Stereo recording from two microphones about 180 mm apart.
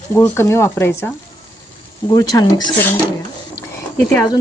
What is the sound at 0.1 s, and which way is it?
Speech, 15° left (ahead or behind).